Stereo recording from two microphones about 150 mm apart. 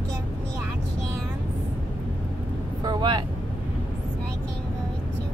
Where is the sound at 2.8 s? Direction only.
30° right (ahead or behind).